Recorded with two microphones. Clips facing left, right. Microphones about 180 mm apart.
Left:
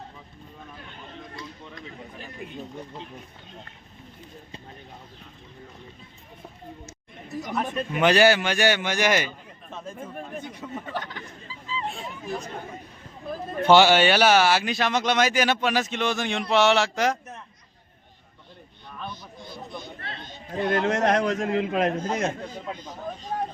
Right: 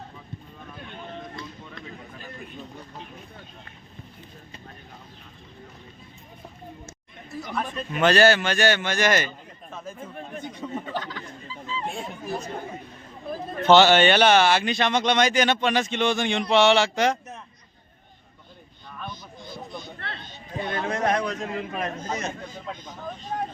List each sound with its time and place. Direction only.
1.7 s a sound: 20° left (ahead or behind)
7.4 s a man's voice: 20° left (ahead or behind)
10.6 s speech: centre (ahead or behind)
13.6 s speech: 10° left (ahead or behind)
20.7 s a man's voice: 75° left (ahead or behind)